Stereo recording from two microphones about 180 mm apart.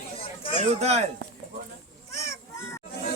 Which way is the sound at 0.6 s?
40° right (ahead or behind).